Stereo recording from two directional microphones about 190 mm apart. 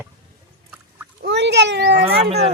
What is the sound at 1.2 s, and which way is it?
Speech, 65° right (ahead or behind).